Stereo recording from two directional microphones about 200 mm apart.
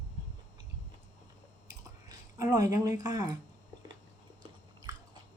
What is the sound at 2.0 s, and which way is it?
Speech, 20° right (ahead or behind).